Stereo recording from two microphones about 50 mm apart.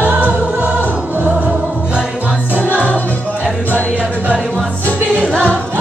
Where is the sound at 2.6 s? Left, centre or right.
Left.